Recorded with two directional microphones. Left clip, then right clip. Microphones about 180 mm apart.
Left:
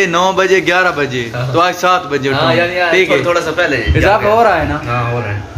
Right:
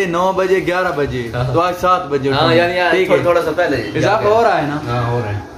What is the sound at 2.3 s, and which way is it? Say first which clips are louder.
Speech: even; 60° right (ahead or behind).